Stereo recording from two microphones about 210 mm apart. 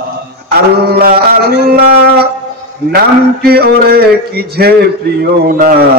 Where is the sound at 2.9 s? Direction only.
50° right (ahead or behind).